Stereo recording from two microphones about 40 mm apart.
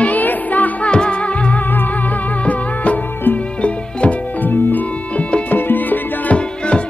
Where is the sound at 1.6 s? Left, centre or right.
Left.